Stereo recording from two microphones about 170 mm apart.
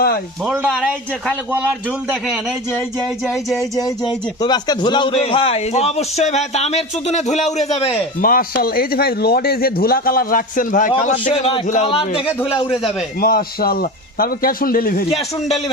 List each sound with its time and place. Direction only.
2.0 s music: 5° right (ahead or behind)
3.8 s a man's voice: 20° left (ahead or behind)
8.2 s a man's voice: 55° left (ahead or behind)
11.0 s a man's voice: 35° left (ahead or behind)
13.2 s a man's voice: 60° left (ahead or behind)
15.1 s a man's voice: 40° left (ahead or behind)